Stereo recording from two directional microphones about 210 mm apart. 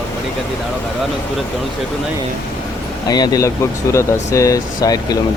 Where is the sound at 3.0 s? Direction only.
20° left (ahead or behind).